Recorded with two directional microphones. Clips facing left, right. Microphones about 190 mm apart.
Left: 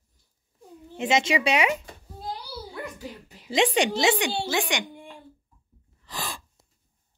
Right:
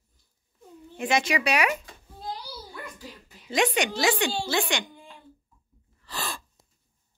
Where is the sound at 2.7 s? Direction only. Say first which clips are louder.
Left 5 dB; 15° left (ahead or behind).